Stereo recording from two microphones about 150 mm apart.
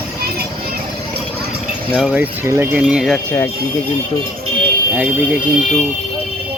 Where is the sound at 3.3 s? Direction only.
15° left (ahead or behind).